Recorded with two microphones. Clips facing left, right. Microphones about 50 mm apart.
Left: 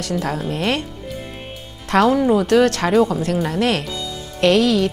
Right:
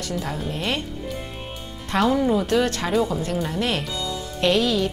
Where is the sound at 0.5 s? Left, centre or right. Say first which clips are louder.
Left 5 dB; left.